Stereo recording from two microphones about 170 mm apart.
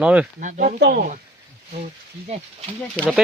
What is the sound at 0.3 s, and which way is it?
Speech, 50° right (ahead or behind).